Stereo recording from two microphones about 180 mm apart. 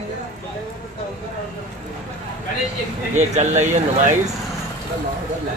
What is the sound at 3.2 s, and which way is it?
Speech, 40° right (ahead or behind).